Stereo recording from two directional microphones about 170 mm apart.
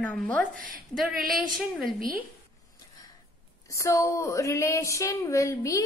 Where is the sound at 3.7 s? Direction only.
15° left (ahead or behind).